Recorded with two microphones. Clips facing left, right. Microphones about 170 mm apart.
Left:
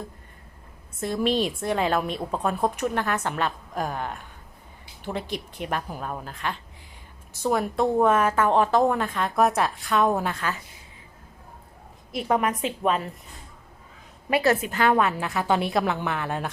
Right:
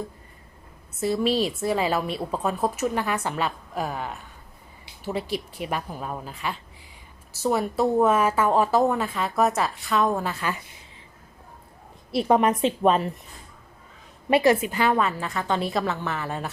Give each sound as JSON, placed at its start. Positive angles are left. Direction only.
{"t": 0.9, "sound": "a woman's voice", "side_deg": -5}
{"t": 12.1, "sound": "a woman's voice", "side_deg": -30}
{"t": 14.4, "sound": "a woman's voice", "side_deg": -10}